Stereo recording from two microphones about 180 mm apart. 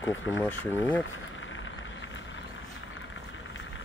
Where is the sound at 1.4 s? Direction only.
90° left.